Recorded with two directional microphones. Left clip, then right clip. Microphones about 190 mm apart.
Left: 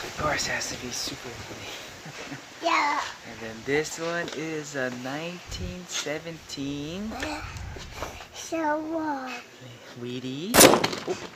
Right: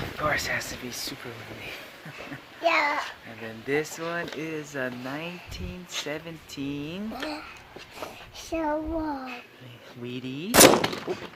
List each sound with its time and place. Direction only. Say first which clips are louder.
0.2 s speech: even; 10° right (ahead or behind)
2.6 s a child's voice: right 1 dB; 55° right (ahead or behind)
3.4 s speech: left 1 dB; 5° right (ahead or behind)
7.9 s a child's voice: left 2 dB; 20° right (ahead or behind)
10.1 s speech: even; 5° right (ahead or behind)